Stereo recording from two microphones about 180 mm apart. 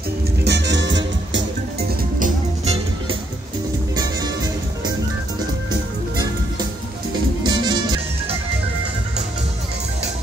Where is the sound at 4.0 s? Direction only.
20° right (ahead or behind).